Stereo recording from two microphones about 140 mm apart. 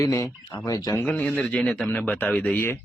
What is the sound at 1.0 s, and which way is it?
Speech, 10° left (ahead or behind).